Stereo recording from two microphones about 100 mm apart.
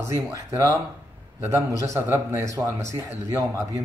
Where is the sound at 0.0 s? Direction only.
30° right (ahead or behind).